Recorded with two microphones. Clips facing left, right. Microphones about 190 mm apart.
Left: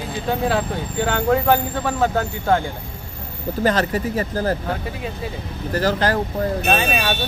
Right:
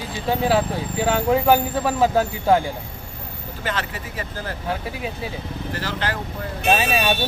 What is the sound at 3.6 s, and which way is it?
Speech, 40° left (ahead or behind).